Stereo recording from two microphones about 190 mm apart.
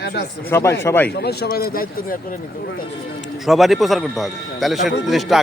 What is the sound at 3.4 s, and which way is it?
Speech, centre (ahead or behind).